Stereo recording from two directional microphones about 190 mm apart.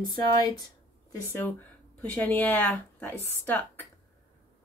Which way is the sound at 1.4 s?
10° left (ahead or behind).